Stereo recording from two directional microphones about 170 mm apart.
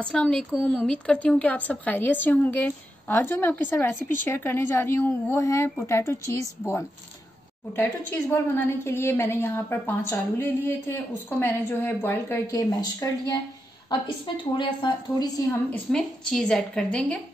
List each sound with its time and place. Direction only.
0.0 s a woman's voice: 5° left (ahead or behind)
7.7 s a woman's voice: 10° left (ahead or behind)
15.7 s a woman's voice: 5° left (ahead or behind)